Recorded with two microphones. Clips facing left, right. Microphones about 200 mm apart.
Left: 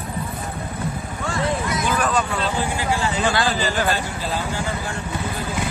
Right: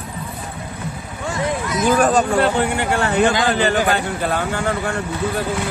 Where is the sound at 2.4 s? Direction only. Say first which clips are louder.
Right 5 dB; 65° right (ahead or behind).